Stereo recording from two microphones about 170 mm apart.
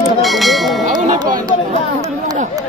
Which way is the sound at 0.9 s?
50° right (ahead or behind).